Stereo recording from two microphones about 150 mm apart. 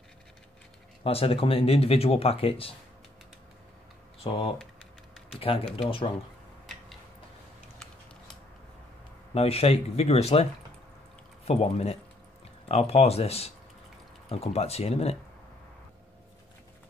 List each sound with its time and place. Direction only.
1.0 s speech: 40° left (ahead or behind)
4.2 s speech: 35° left (ahead or behind)
9.3 s speech: 40° left (ahead or behind)
11.4 s speech: 45° left (ahead or behind)